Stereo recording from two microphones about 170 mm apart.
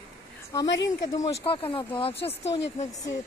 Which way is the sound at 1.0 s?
20° left (ahead or behind).